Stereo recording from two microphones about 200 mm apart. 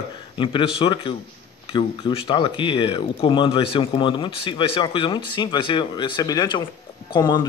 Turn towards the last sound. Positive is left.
turn(degrees=25)  # may be behind; listen again after turning